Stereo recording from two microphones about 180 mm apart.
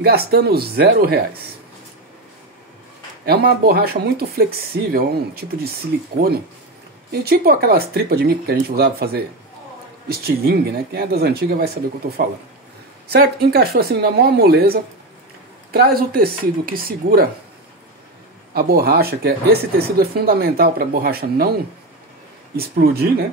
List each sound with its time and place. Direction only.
0.0 s speech: 60° right (ahead or behind)
3.3 s speech: 60° right (ahead or behind)
7.1 s speech: 60° right (ahead or behind)
18.5 s speech: 55° right (ahead or behind)
22.6 s speech: 60° right (ahead or behind)